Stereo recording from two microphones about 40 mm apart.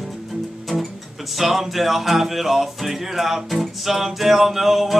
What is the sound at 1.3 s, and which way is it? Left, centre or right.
Music, centre.